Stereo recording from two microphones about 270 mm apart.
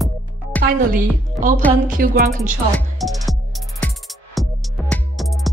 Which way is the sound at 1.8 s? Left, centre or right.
Right.